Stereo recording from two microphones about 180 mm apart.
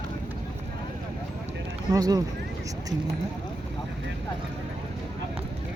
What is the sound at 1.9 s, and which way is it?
Speech, 20° right (ahead or behind).